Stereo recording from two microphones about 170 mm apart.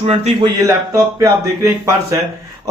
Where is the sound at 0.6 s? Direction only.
20° right (ahead or behind).